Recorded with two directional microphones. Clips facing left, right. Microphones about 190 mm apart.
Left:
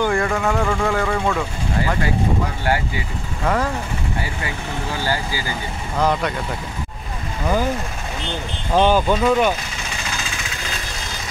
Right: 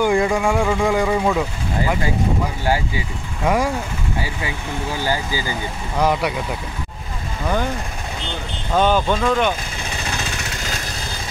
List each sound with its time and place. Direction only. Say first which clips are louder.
0.0 s speech: right 2 dB; 15° right (ahead or behind)
3.4 s speech: right 2 dB; 10° right (ahead or behind)
4.9 s speech: right 1 dB; 15° right (ahead or behind)
8.7 s speech: left 1 dB; 10° left (ahead or behind)